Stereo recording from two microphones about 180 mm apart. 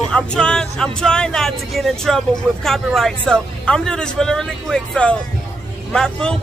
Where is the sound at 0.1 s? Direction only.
5° left (ahead or behind).